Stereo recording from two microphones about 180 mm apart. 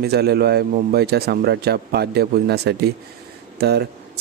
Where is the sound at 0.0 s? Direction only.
65° right (ahead or behind).